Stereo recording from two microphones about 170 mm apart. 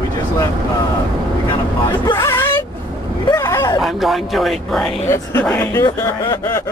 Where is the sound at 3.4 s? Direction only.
15° left (ahead or behind).